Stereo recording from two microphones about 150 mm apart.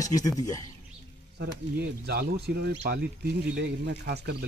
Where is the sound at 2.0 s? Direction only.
90° right.